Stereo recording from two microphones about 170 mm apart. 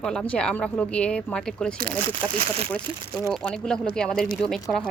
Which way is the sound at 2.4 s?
35° right (ahead or behind).